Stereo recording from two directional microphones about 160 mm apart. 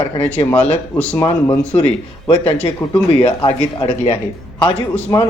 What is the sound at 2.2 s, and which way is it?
A man's voice, 35° left (ahead or behind).